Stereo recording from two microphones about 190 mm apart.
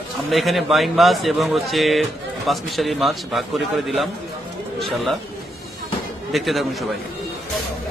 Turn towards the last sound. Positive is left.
turn(degrees=0)  # may be behind; listen again after turning